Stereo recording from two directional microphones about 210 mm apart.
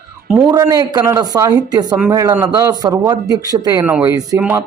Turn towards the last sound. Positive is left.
turn(degrees=-10)  # may be behind; listen again after turning